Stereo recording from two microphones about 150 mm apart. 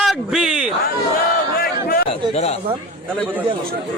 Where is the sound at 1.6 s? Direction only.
80° left.